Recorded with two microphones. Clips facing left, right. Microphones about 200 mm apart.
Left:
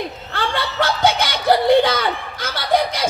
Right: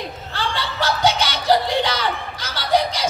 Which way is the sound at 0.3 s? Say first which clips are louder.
Left 2 dB; 55° left (ahead or behind).